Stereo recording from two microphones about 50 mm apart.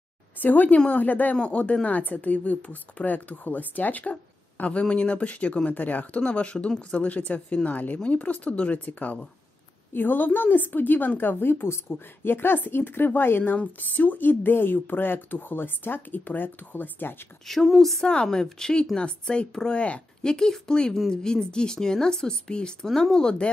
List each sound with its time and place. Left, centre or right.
0.4 s speech: left
1.3 s a woman's voice: left
17.6 s a woman's voice: centre
18.0 s a woman's voice: centre
22.8 s a woman's voice: centre
23.1 s a woman's voice: centre